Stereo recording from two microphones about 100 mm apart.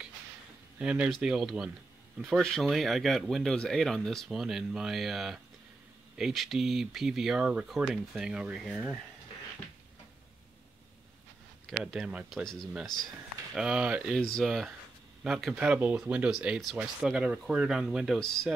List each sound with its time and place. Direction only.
0.7 s speech: 10° right (ahead or behind)
11.9 s speech: 10° right (ahead or behind)
13.6 s speech: 10° right (ahead or behind)
14.1 s speech: 5° left (ahead or behind)
15.6 s speech: 15° right (ahead or behind); by 18.5 s 5° left (ahead or behind)